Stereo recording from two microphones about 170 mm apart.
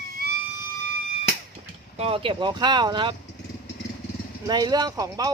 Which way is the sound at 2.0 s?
35° right (ahead or behind).